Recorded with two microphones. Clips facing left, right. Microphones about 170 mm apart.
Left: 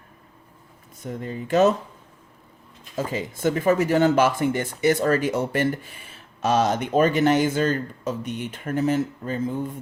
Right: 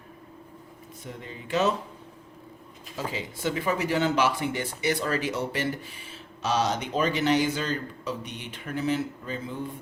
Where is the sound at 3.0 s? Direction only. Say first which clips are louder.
Left 6 dB; 45° left (ahead or behind).